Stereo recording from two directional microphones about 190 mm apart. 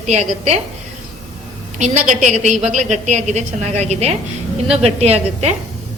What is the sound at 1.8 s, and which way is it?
A woman's voice, 40° right (ahead or behind).